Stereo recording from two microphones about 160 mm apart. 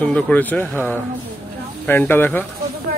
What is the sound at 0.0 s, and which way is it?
Speech, 10° left (ahead or behind).